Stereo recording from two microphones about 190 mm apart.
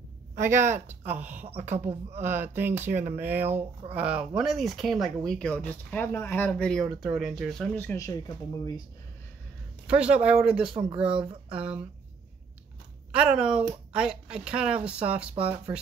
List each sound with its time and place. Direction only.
0.4 s speech: 15° right (ahead or behind)
1.9 s speech: 35° right (ahead or behind)
2.2 s speech: 10° right (ahead or behind); by 8.2 s 15° left (ahead or behind)
9.8 s speech: 5° right (ahead or behind)
13.1 s speech: 5° right (ahead or behind)